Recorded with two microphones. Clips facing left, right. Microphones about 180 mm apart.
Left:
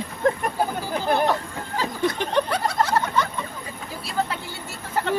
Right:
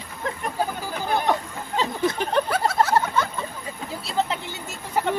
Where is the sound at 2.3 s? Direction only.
5° right (ahead or behind).